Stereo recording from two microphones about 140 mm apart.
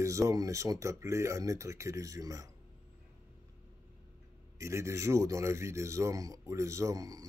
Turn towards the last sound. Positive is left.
turn(degrees=-25)  # may be behind; listen again after turning